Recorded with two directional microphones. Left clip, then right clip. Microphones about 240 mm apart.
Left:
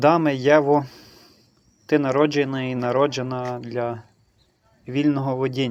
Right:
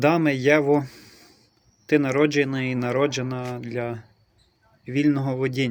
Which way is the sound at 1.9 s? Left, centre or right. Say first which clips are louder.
Left 1 dB; centre.